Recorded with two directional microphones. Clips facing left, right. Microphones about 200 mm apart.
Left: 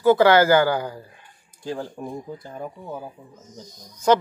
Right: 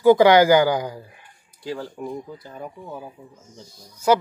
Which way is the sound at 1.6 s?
50° left (ahead or behind).